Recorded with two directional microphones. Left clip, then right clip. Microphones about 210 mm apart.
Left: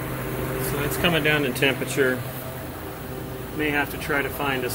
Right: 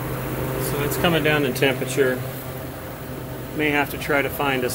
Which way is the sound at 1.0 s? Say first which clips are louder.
Right 1 dB; 10° right (ahead or behind).